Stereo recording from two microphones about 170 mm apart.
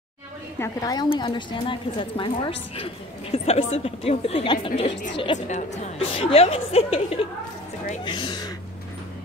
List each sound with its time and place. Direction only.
0.6 s a woman's voice: 20° left (ahead or behind)
5.5 s a woman's voice: 40° left (ahead or behind)